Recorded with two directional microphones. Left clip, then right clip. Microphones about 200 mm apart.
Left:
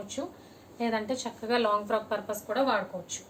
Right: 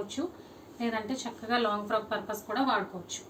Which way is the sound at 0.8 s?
45° left (ahead or behind).